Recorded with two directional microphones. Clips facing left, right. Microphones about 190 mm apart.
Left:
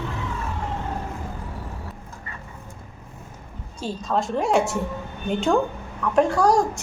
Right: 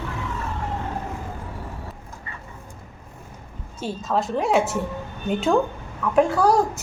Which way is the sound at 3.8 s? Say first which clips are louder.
Even; 5° right (ahead or behind).